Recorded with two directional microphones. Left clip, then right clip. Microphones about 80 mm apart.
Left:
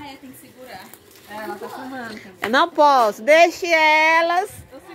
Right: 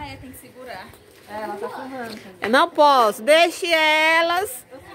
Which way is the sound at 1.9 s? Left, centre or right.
Right.